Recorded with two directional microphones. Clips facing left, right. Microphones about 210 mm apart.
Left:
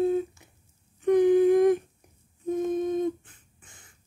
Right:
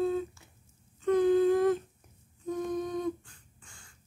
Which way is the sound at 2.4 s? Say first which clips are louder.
Left 6 dB; 20° left (ahead or behind).